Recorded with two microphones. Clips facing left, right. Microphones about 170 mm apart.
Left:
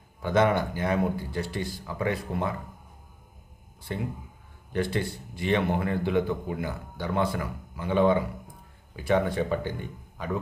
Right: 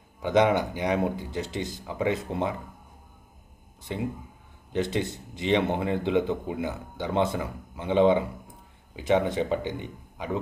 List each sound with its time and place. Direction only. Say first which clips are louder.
0.2 s a man's voice: right 1 dB; 15° right (ahead or behind)
4.7 s a man's voice: right 1 dB; 20° right (ahead or behind)